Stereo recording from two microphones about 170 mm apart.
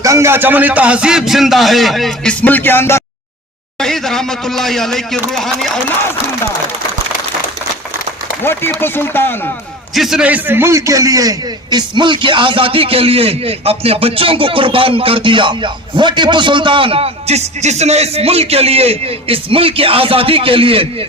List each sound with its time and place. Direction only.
0.0 s speech: 15° right (ahead or behind); by 3.0 s 15° left (ahead or behind)
3.8 s speech: 5° left (ahead or behind)
8.8 s speech: 10° left (ahead or behind)
9.9 s a man's voice: centre (ahead or behind); by 21.1 s 30° right (ahead or behind)